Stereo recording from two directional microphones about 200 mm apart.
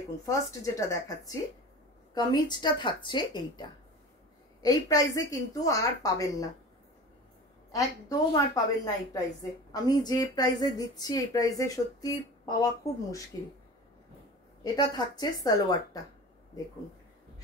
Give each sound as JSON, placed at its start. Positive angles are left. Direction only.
{"t": 0.2, "sound": "a woman's voice", "side_deg": 15}
{"t": 7.7, "sound": "a woman's voice", "side_deg": 20}
{"t": 14.6, "sound": "a woman's voice", "side_deg": 20}